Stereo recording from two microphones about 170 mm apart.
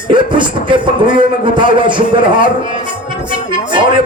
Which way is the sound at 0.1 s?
30° right (ahead or behind).